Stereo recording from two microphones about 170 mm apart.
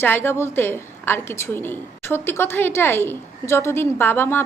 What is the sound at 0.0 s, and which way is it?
A woman's voice, 15° left (ahead or behind).